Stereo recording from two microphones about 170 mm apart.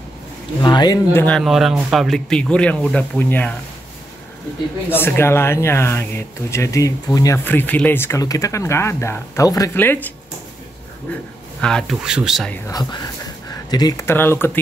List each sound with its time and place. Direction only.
0.6 s speech: 25° left (ahead or behind)
1.1 s speech: 10° left (ahead or behind)
1.4 s speech: centre (ahead or behind)
4.8 s speech: 10° left (ahead or behind)
11.6 s speech: centre (ahead or behind)
12.6 s speech: 20° left (ahead or behind)